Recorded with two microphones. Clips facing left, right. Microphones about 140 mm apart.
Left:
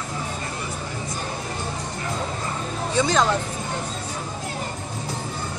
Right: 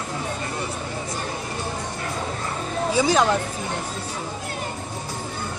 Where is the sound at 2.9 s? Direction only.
10° right (ahead or behind).